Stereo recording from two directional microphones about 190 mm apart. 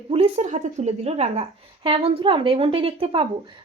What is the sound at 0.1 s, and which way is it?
A woman's voice, 35° right (ahead or behind).